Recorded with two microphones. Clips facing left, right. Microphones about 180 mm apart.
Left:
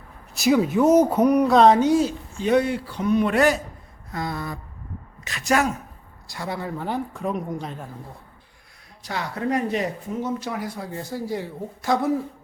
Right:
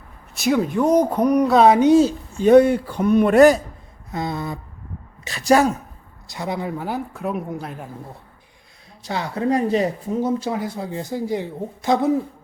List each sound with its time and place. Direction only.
0.3 s speech: centre (ahead or behind)
1.5 s speech: 10° right (ahead or behind)
1.9 s speech: 25° right (ahead or behind)
2.4 s speech: 50° right (ahead or behind)
4.1 s a woman's voice: 20° right (ahead or behind)
6.2 s speech: 20° right (ahead or behind)
9.0 s speech: 25° right (ahead or behind)